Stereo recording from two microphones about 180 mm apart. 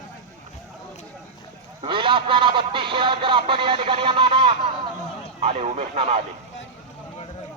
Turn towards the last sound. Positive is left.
turn(degrees=-40)  # may be behind; listen again after turning